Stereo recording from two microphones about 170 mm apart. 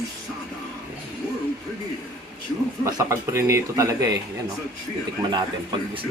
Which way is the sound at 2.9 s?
15° right (ahead or behind).